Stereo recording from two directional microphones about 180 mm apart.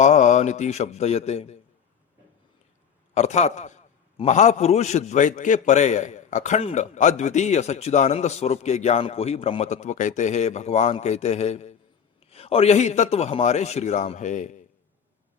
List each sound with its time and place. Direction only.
0.0 s a man's voice: 40° left (ahead or behind)
3.2 s a man's voice: 40° left (ahead or behind)